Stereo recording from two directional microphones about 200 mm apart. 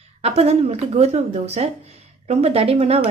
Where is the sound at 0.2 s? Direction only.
35° right (ahead or behind).